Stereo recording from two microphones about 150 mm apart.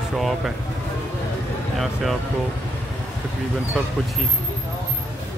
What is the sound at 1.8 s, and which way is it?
Speech, centre (ahead or behind).